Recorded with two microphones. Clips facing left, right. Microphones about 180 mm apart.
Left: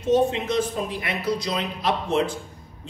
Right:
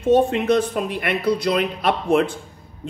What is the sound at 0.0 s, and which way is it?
Speech, 55° right (ahead or behind).